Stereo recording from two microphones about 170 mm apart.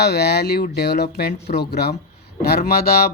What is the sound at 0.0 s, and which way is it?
A man's voice, 75° left (ahead or behind).